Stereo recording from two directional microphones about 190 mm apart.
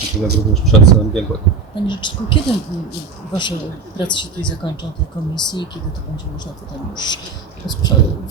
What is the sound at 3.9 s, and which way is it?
Speech, 25° left (ahead or behind).